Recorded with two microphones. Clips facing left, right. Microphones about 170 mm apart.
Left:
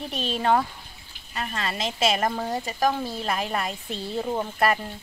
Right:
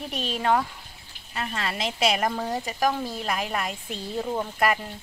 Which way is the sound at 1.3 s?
10° right (ahead or behind).